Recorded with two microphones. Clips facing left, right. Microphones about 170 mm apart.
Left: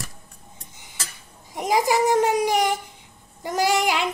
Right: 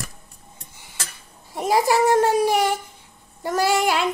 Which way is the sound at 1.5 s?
15° left (ahead or behind).